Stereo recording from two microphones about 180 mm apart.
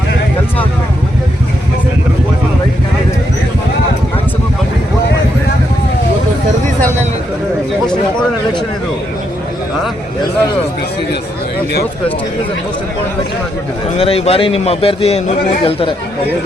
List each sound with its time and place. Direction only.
14.0 s a man's voice: 35° left (ahead or behind)